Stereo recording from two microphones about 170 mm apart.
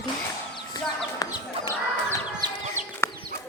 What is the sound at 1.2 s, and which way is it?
Chicken, 20° left (ahead or behind).